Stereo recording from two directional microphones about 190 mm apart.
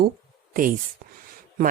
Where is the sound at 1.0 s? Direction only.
50° right (ahead or behind).